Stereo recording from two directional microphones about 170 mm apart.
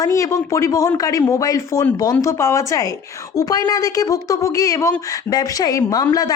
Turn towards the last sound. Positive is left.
turn(degrees=20)  # may be behind; listen again after turning